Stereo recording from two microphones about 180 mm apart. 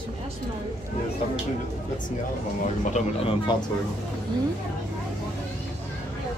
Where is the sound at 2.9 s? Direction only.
35° left (ahead or behind).